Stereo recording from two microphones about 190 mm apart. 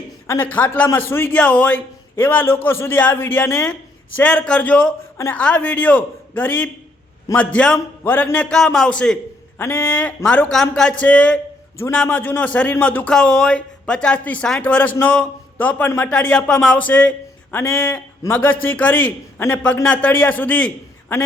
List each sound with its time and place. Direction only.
0.3 s a man's voice: 10° left (ahead or behind)